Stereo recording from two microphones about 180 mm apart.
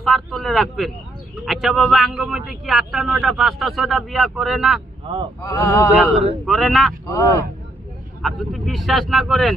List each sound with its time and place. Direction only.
0.0 s a man's voice: centre (ahead or behind)
5.1 s speech: 30° right (ahead or behind)
5.4 s a sound: 15° left (ahead or behind)
6.4 s a man's voice: centre (ahead or behind)
7.1 s a sound: 20° left (ahead or behind)
8.2 s a man's voice: centre (ahead or behind)